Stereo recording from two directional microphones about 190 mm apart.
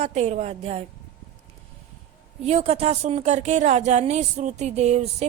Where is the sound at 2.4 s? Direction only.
35° right (ahead or behind).